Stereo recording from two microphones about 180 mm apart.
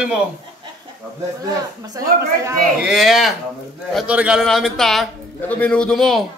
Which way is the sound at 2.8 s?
Centre (ahead or behind).